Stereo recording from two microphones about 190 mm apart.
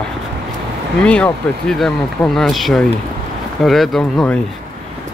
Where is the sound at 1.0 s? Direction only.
5° left (ahead or behind).